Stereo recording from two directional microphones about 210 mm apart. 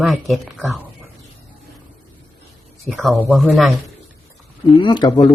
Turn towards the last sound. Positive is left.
turn(degrees=20)  # may be behind; listen again after turning